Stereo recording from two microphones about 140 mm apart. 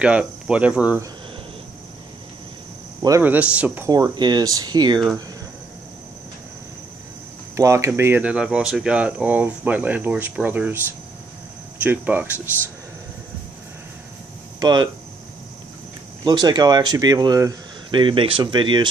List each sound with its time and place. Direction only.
0.0 s speech: 10° right (ahead or behind)
3.2 s speech: 10° right (ahead or behind)
3.9 s speech: 30° right (ahead or behind)
7.5 s speech: 20° right (ahead or behind)
11.8 s speech: 15° right (ahead or behind)
14.6 s speech: 30° right (ahead or behind)
16.3 s speech: 30° right (ahead or behind)